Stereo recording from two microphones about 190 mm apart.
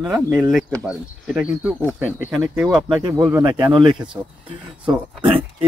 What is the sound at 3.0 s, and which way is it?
Speech, 20° right (ahead or behind).